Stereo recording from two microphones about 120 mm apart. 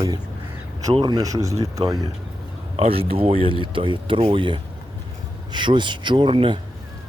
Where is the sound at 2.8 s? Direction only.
50° right (ahead or behind).